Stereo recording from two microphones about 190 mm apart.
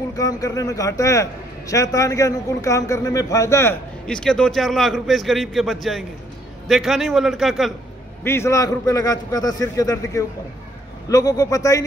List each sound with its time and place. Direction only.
0.1 s a man's voice: 20° left (ahead or behind)
4.0 s a man's voice: 5° left (ahead or behind)
8.2 s a man's voice: 15° left (ahead or behind)